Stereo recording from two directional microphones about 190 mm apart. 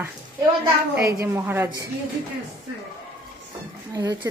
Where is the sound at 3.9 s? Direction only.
20° right (ahead or behind).